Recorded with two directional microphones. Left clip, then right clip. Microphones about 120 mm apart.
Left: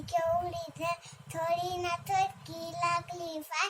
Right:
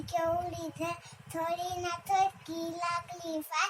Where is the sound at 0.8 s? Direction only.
40° left (ahead or behind).